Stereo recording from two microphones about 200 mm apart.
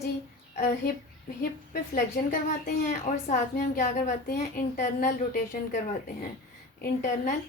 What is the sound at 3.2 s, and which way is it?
A woman's voice, 35° left (ahead or behind).